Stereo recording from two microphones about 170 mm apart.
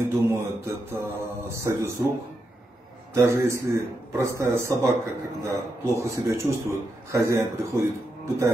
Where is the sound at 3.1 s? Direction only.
15° right (ahead or behind).